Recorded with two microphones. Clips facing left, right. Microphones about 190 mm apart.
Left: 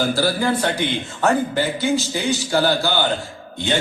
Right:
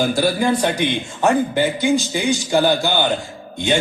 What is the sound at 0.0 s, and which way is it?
A man's voice, 15° right (ahead or behind).